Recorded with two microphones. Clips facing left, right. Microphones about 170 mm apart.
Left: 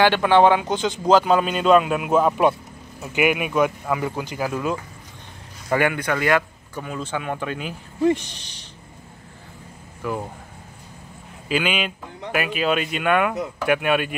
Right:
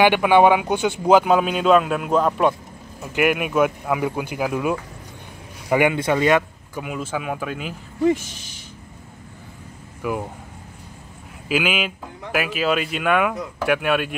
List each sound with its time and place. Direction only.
0.0 s speech: 15° right (ahead or behind)
6.8 s speech: 10° right (ahead or behind)
10.0 s speech: 10° right (ahead or behind)
11.4 s speech: 5° right (ahead or behind)